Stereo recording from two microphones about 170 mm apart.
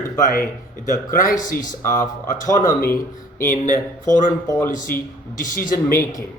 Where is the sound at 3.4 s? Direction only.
50° left (ahead or behind).